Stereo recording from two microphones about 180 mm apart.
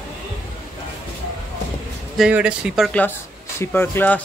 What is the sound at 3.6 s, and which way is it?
Speech, 10° left (ahead or behind).